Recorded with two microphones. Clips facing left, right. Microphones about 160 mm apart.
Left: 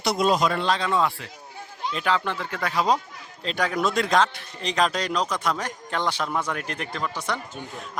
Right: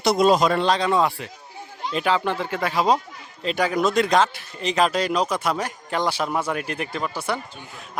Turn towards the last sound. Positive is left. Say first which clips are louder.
# right 2 dB
turn(degrees=-10)  # may be behind; listen again after turning